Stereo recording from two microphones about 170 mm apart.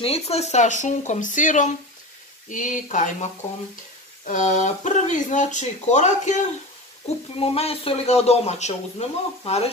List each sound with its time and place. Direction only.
0.0 s speech: 35° left (ahead or behind)
4.3 s speech: 50° left (ahead or behind)